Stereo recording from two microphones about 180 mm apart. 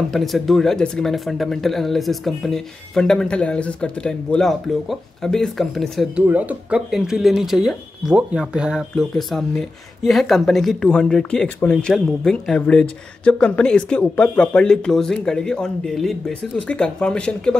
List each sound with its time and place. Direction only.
0.1 s speech: centre (ahead or behind)